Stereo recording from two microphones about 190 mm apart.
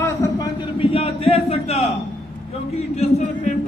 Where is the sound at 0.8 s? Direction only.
30° left (ahead or behind).